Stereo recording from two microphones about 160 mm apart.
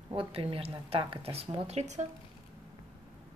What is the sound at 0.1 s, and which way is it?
A woman's voice, 35° right (ahead or behind).